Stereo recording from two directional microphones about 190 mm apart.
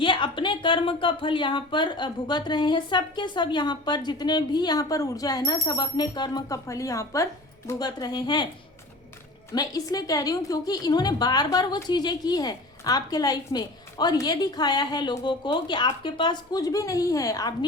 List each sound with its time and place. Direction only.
0.0 s a woman's voice: 25° left (ahead or behind)
9.6 s a woman's voice: 20° left (ahead or behind)